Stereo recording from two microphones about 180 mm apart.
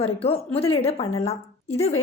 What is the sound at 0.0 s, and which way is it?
A woman's voice, 35° left (ahead or behind).